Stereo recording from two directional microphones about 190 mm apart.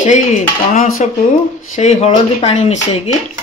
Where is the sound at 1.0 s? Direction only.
35° left (ahead or behind).